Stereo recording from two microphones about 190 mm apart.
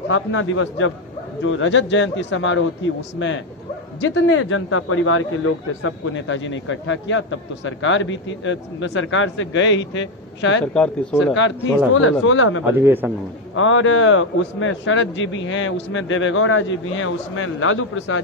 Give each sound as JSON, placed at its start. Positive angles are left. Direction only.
{"t": 0.1, "sound": "a man's voice", "side_deg": 90}
{"t": 10.7, "sound": "speech", "side_deg": 5}
{"t": 11.3, "sound": "speech", "side_deg": 75}
{"t": 11.9, "sound": "a man's voice", "side_deg": 90}
{"t": 12.7, "sound": "a man's voice", "side_deg": -10}
{"t": 13.6, "sound": "a man's voice", "side_deg": 90}